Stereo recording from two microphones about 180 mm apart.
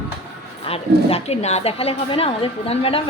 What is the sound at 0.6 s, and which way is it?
A woman's voice, 35° left (ahead or behind).